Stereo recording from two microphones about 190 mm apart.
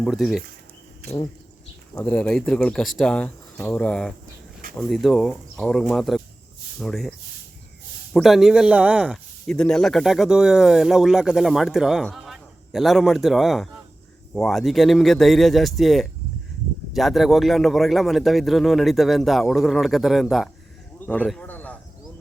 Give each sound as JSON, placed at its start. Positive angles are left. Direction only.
{"t": 0.0, "sound": "a man's voice", "side_deg": 0}
{"t": 2.0, "sound": "a man's voice", "side_deg": 5}
{"t": 8.1, "sound": "a man's voice", "side_deg": 0}
{"t": 21.1, "sound": "a sound", "side_deg": 5}